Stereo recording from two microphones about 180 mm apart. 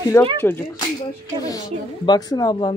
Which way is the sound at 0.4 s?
10° left (ahead or behind).